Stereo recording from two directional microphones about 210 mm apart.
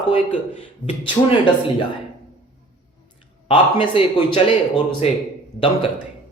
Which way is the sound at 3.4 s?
25° left (ahead or behind).